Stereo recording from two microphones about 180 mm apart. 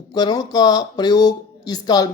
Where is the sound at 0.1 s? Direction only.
20° left (ahead or behind).